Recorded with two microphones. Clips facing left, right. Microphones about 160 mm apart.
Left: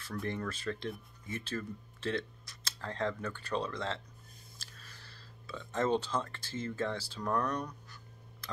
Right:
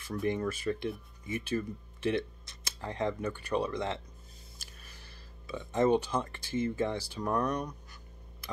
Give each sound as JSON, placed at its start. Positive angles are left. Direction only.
{"t": 0.0, "sound": "speech", "side_deg": -15}